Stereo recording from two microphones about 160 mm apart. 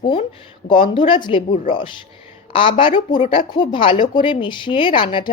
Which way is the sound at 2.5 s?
35° left (ahead or behind).